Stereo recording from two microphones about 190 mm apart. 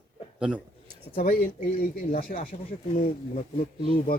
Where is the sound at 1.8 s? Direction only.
45° left (ahead or behind).